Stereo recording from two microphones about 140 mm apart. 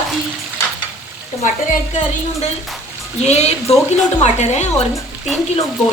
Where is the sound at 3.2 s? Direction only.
50° left (ahead or behind).